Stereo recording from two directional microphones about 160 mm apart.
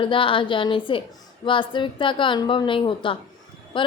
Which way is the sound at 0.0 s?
35° left (ahead or behind).